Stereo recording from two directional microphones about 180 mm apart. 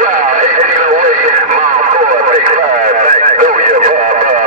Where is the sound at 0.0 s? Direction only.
45° right (ahead or behind).